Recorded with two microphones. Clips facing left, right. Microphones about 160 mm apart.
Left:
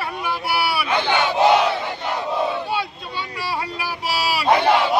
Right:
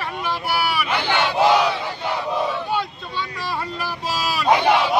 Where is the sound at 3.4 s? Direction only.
10° left (ahead or behind).